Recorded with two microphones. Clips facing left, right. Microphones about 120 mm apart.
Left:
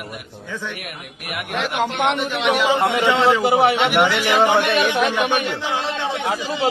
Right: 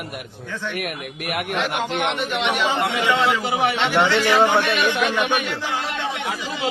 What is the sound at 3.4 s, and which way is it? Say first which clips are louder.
Speech: left 6 dB; 40° left (ahead or behind).